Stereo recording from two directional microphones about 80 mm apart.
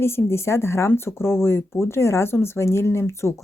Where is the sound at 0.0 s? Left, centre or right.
Left.